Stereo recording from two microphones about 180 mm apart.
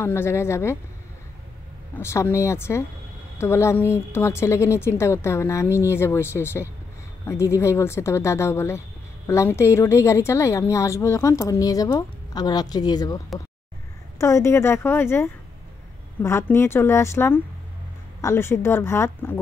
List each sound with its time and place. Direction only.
0.0 s a woman's voice: 15° left (ahead or behind)
2.0 s a woman's voice: 15° left (ahead or behind)